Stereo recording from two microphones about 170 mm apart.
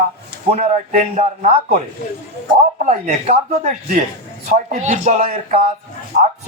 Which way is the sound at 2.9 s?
45° right (ahead or behind).